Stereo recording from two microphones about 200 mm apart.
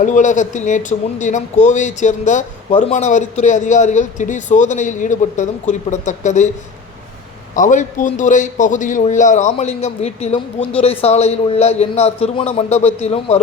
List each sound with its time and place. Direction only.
0.0 s speech: 40° left (ahead or behind)
7.5 s speech: 40° left (ahead or behind)